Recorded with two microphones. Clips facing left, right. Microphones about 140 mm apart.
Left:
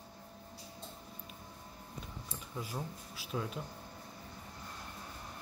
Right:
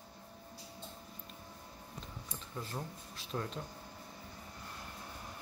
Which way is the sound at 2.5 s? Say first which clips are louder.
Left 1 dB; 10° left (ahead or behind).